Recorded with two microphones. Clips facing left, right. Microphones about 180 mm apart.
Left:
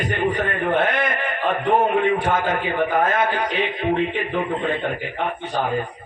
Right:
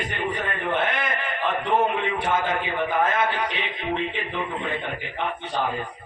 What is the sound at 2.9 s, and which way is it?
A man's voice, 45° left (ahead or behind).